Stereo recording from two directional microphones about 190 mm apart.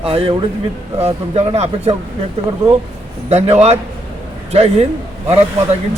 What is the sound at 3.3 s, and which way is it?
Speech, 35° right (ahead or behind).